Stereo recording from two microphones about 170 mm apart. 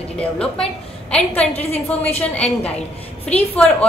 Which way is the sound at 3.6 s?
5° left (ahead or behind).